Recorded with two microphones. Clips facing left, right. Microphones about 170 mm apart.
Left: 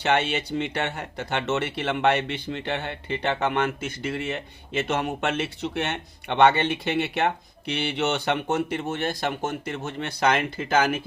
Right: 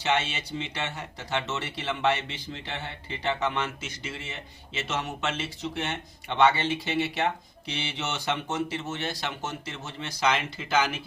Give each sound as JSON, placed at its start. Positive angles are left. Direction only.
{"t": 0.0, "sound": "speech", "side_deg": 60}